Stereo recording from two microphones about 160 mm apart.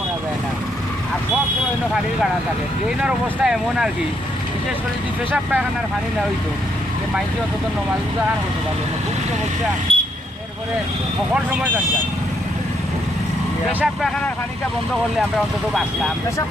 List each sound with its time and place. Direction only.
3.0 s speech: 5° right (ahead or behind)
5.3 s speech: 10° right (ahead or behind)
9.9 s vehicle: 35° right (ahead or behind)
13.7 s speech: 5° right (ahead or behind)